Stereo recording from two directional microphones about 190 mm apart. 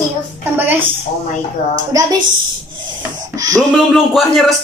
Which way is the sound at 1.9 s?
20° right (ahead or behind).